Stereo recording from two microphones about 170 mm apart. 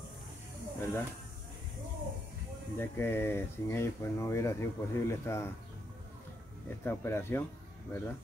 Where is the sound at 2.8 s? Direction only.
10° left (ahead or behind).